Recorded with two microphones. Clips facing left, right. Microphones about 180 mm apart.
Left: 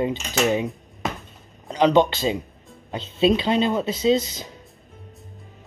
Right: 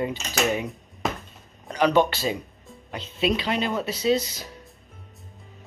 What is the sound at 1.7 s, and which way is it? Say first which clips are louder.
Speech: left 3 dB; 20° left (ahead or behind).